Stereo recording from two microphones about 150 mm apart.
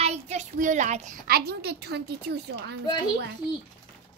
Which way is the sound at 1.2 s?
90° right.